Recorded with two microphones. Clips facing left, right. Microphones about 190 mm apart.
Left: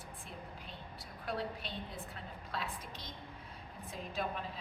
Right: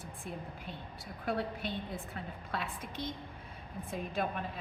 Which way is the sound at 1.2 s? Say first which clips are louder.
Right 5 dB; 55° right (ahead or behind).